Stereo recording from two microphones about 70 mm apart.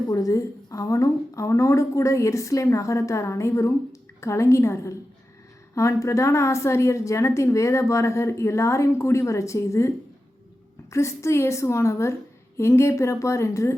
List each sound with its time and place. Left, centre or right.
0.1 s a woman's voice: left
10.9 s a woman's voice: left